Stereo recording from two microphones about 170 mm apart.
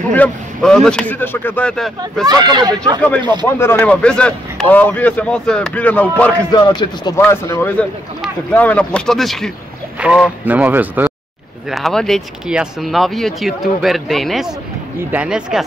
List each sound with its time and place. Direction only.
0.1 s a man's voice: 5° left (ahead or behind)
2.2 s speech: 25° right (ahead or behind)
3.5 s a man's voice: 10° left (ahead or behind)
6.5 s a man's voice: 25° left (ahead or behind)
7.2 s a man's voice: 15° left (ahead or behind); by 11.1 s 10° right (ahead or behind)
11.7 s speech: centre (ahead or behind)